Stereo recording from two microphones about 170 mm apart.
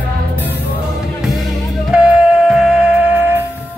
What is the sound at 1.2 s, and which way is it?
Music, 5° right (ahead or behind).